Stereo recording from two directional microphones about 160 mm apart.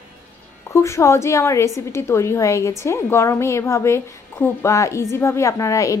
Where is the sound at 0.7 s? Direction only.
15° left (ahead or behind).